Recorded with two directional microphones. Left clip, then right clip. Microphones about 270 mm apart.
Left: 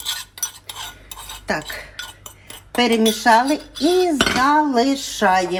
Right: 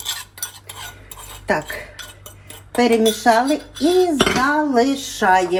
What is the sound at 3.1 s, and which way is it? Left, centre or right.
Speech, left.